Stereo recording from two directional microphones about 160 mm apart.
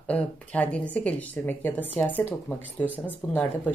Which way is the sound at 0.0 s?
10° left (ahead or behind).